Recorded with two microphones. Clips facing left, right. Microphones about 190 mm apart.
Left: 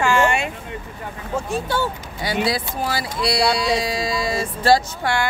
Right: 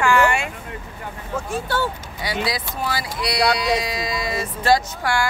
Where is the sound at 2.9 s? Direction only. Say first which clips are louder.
Left 4 dB; 30° left (ahead or behind).